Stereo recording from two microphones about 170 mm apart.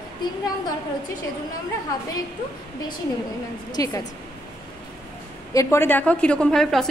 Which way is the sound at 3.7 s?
20° left (ahead or behind).